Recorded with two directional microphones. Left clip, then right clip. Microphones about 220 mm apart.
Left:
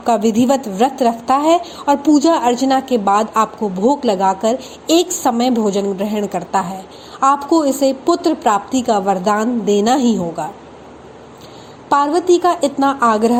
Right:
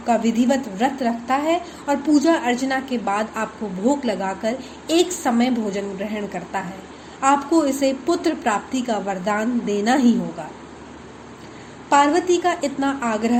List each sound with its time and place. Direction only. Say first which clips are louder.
0.0 s a woman's voice: left 5 dB; 35° left (ahead or behind)
11.9 s a woman's voice: left 3 dB; 30° left (ahead or behind)